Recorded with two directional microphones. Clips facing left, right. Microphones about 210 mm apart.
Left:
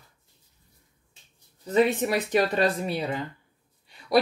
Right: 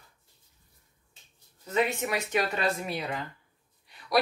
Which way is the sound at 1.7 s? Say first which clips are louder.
Left 6 dB; 35° left (ahead or behind).